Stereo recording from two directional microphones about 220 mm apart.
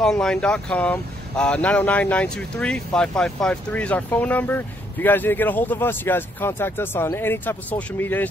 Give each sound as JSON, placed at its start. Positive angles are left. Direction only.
{"t": 0.0, "sound": "speech", "side_deg": 5}